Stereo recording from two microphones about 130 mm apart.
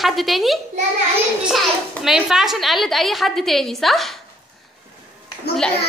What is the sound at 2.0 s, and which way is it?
A woman's voice, 5° right (ahead or behind).